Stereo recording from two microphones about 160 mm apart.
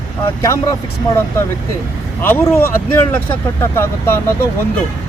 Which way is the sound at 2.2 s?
10° left (ahead or behind).